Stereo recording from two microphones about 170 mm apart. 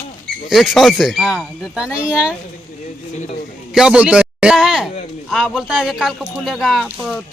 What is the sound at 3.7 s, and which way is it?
A man's voice, 5° right (ahead or behind).